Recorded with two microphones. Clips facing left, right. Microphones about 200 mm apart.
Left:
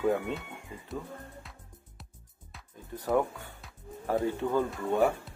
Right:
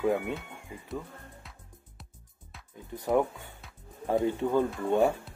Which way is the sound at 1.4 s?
Centre (ahead or behind).